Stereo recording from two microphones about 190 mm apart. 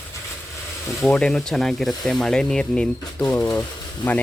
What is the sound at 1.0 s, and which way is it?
Speech, 5° left (ahead or behind).